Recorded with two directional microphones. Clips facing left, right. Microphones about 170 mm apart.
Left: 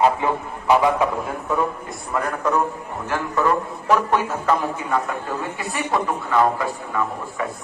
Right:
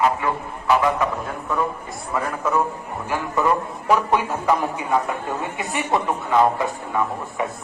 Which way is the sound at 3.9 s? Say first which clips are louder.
Even; 10° right (ahead or behind).